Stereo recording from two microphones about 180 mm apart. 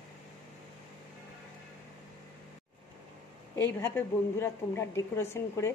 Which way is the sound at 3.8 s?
15° left (ahead or behind).